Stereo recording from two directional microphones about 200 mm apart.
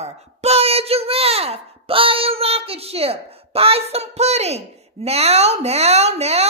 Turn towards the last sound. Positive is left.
turn(degrees=-30)  # may be behind; listen again after turning